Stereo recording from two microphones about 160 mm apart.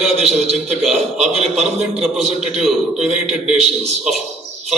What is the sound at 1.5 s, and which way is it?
Speech, centre (ahead or behind).